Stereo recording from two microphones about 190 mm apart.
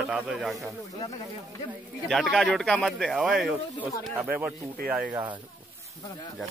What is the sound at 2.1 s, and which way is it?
Speech, centre (ahead or behind).